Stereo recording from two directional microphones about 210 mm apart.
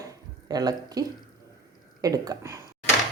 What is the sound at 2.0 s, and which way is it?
Speech, 15° right (ahead or behind).